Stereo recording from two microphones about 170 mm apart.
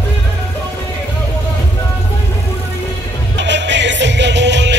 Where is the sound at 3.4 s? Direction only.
90° right.